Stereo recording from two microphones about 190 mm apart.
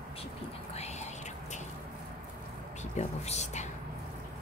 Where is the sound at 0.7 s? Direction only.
35° left (ahead or behind).